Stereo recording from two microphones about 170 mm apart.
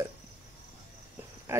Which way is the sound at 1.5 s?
15° right (ahead or behind).